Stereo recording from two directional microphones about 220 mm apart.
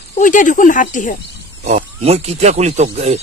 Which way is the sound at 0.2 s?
35° left (ahead or behind).